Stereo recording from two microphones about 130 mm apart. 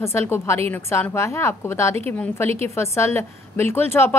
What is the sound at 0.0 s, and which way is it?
A woman's voice, 20° left (ahead or behind).